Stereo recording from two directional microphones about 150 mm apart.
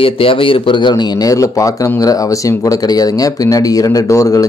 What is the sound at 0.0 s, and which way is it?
A man's voice, 40° left (ahead or behind).